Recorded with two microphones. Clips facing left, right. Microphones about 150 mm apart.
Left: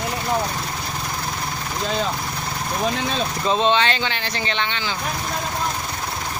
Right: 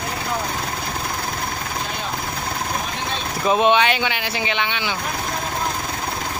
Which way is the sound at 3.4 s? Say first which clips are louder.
Right 3 dB; 15° right (ahead or behind).